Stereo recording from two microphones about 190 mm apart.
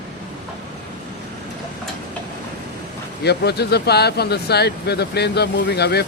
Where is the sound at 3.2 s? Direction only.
60° left (ahead or behind).